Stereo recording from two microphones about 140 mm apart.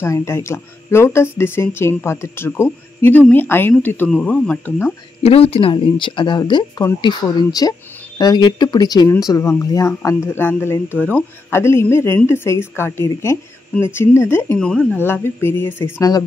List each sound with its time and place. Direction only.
0.0 s speech: 20° left (ahead or behind)
5.2 s speech: 45° left (ahead or behind); by 14.7 s 15° left (ahead or behind)
14.7 s speech: 5° left (ahead or behind)
15.0 s speech: 15° left (ahead or behind)